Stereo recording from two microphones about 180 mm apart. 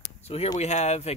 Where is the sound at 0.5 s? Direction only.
40° left (ahead or behind).